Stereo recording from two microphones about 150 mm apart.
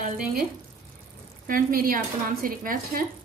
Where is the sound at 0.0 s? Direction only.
75° right (ahead or behind).